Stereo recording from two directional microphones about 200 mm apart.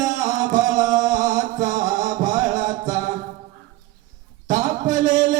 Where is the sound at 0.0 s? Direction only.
40° right (ahead or behind).